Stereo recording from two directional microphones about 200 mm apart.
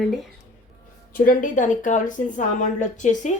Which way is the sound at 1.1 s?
45° left (ahead or behind).